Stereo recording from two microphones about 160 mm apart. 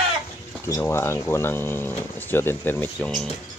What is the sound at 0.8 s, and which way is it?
Speech, 15° left (ahead or behind).